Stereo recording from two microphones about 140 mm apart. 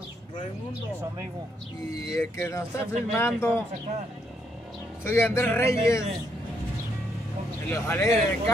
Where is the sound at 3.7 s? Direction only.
55° right (ahead or behind).